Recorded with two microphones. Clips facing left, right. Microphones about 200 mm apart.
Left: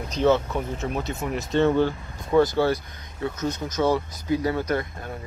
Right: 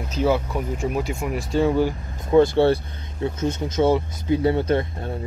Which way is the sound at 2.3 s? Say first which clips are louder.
Right 4 dB; 25° right (ahead or behind).